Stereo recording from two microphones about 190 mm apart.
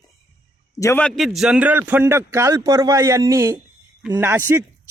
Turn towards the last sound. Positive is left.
turn(degrees=-10)  # may be behind; listen again after turning